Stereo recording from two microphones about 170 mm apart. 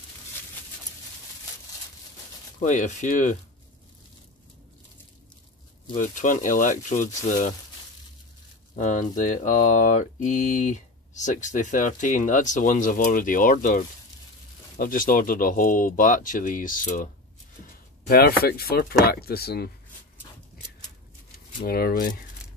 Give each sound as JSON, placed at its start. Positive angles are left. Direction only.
{"t": 2.6, "sound": "mantra", "side_deg": 45}
{"t": 5.9, "sound": "mantra", "side_deg": 50}
{"t": 8.7, "sound": "mantra", "side_deg": 50}
{"t": 18.0, "sound": "speech", "side_deg": 65}
{"t": 21.6, "sound": "speech", "side_deg": 65}